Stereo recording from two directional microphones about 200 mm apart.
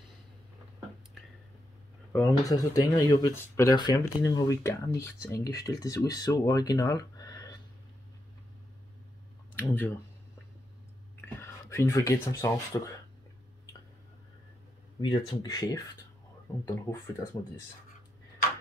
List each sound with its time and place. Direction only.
2.1 s speech: 15° left (ahead or behind)
9.6 s speech: 10° left (ahead or behind)
11.7 s speech: 15° left (ahead or behind)
15.0 s speech: 20° left (ahead or behind)